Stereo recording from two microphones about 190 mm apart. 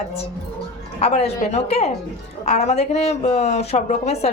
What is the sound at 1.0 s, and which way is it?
Speech, 35° left (ahead or behind).